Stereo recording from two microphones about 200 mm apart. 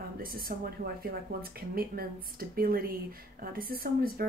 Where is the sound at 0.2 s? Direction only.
50° right (ahead or behind).